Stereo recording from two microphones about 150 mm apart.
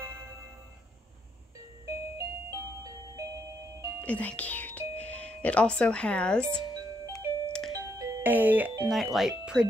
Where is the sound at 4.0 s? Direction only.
10° left (ahead or behind).